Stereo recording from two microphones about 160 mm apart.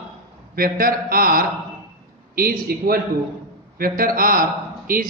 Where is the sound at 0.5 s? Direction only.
65° right (ahead or behind).